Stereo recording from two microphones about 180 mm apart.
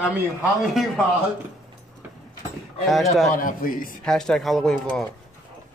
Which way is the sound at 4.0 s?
5° left (ahead or behind).